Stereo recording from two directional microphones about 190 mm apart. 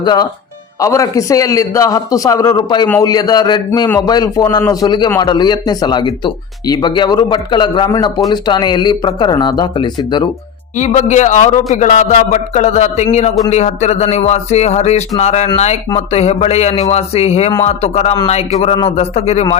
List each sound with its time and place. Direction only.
0.0 s a man's voice: 20° left (ahead or behind)
2.8 s a man's voice: 10° left (ahead or behind)
3.1 s a man's voice: 20° left (ahead or behind)
10.8 s a man's voice: 40° left (ahead or behind)